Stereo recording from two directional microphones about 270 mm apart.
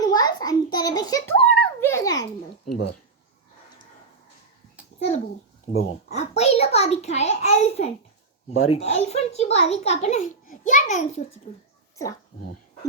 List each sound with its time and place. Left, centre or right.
0.0 s a sound: centre
2.6 s speech: left
5.7 s a child's voice: centre
8.5 s speech: left
8.8 s a child's voice: left